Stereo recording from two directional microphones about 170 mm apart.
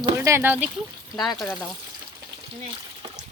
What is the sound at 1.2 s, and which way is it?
Speech, centre (ahead or behind).